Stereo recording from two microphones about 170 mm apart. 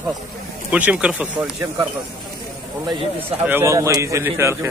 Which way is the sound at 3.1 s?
10° right (ahead or behind).